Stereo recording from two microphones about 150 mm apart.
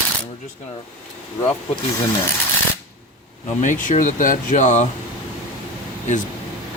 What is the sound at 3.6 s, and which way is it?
Speech, 55° left (ahead or behind).